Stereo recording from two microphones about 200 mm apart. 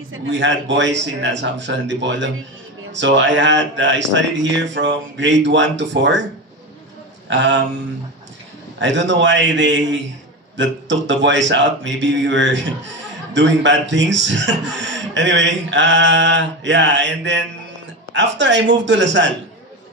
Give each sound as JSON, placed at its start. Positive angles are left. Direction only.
{"t": 0.1, "sound": "a man's voice", "side_deg": -65}
{"t": 7.2, "sound": "a man's voice", "side_deg": -65}
{"t": 8.7, "sound": "a man's voice", "side_deg": -65}